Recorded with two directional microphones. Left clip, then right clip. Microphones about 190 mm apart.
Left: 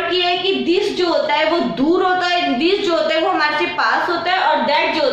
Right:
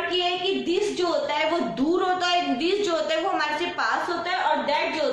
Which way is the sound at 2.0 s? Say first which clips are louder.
Left 5 dB; 15° right (ahead or behind).